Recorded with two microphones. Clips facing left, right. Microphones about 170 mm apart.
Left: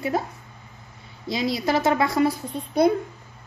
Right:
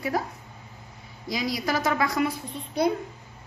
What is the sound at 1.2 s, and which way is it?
A woman's voice, 25° left (ahead or behind).